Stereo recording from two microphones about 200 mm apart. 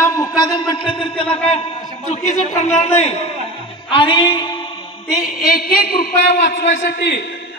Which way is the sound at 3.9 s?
25° left (ahead or behind).